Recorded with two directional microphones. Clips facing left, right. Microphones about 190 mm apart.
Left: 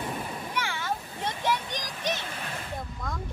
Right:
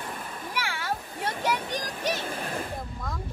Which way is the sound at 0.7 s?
10° right (ahead or behind).